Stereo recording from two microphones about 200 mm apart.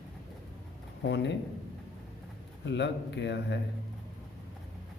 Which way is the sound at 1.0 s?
60° left (ahead or behind).